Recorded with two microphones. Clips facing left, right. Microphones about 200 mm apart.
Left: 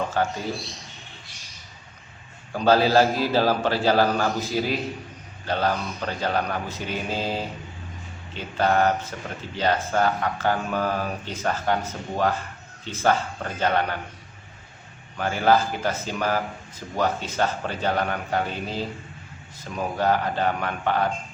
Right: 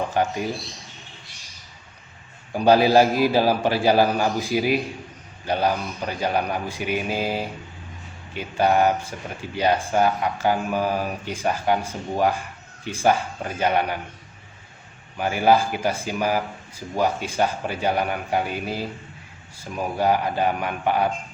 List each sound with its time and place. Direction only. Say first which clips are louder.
0.1 s speech: right 2 dB; 15° right (ahead or behind)
2.5 s speech: right 3 dB; 15° right (ahead or behind)
15.2 s speech: right 2 dB; 10° right (ahead or behind)